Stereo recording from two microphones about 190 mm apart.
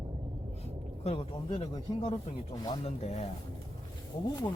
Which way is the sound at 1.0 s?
30° left (ahead or behind).